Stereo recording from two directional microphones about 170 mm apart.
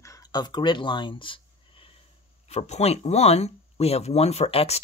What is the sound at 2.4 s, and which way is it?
Speech, 40° left (ahead or behind).